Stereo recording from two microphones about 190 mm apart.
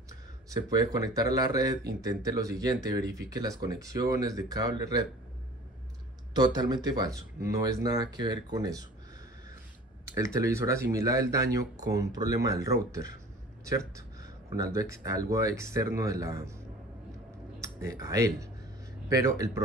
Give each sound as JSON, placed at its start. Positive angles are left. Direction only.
{"t": 0.5, "sound": "speech", "side_deg": -20}
{"t": 6.3, "sound": "speech", "side_deg": -20}
{"t": 10.0, "sound": "speech", "side_deg": -15}
{"t": 17.6, "sound": "speech", "side_deg": -15}